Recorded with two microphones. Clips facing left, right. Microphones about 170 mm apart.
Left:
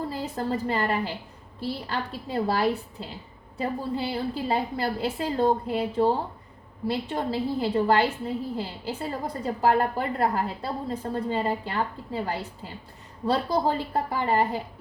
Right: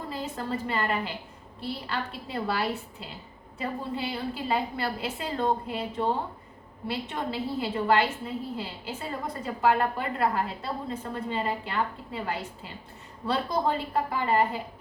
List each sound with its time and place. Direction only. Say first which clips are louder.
0.3 s a woman's voice: left 4 dB; 35° left (ahead or behind)